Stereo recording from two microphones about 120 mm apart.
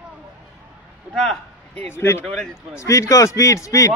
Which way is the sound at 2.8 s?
25° left (ahead or behind).